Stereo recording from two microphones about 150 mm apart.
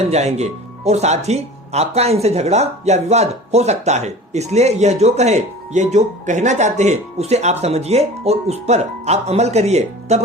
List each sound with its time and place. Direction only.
0.0 s speech: 45° right (ahead or behind)